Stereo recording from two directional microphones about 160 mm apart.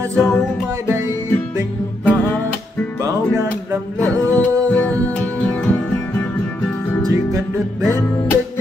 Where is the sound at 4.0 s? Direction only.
10° left (ahead or behind).